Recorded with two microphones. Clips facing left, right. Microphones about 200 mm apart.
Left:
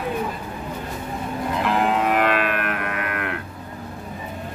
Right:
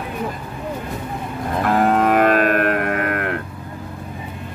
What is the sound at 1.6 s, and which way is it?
Moo, 45° right (ahead or behind).